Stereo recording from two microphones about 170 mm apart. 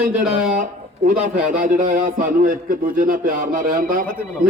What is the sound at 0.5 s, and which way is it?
Speech, 45° right (ahead or behind).